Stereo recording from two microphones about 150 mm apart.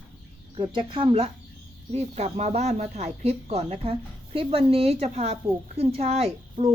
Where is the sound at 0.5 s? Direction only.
30° right (ahead or behind).